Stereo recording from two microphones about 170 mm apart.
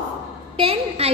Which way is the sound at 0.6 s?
35° right (ahead or behind).